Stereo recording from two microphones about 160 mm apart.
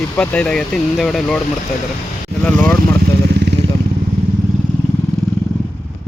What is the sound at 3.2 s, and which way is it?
Motorcycle, 90° right.